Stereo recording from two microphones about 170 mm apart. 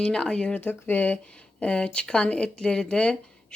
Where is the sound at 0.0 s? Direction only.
5° left (ahead or behind).